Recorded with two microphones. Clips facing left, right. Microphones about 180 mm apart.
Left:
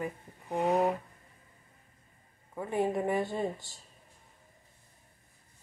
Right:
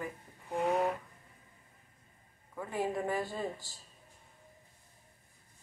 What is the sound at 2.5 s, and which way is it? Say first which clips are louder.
Speech: left 4 dB; 25° left (ahead or behind).